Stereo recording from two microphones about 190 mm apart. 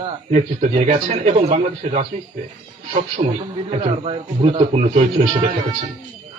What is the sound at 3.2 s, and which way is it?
Speech, 40° right (ahead or behind).